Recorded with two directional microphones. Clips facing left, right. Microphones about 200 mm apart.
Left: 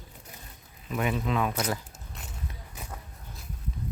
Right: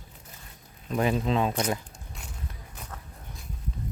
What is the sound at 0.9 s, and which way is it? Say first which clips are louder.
Speech: right 3 dB; 30° right (ahead or behind).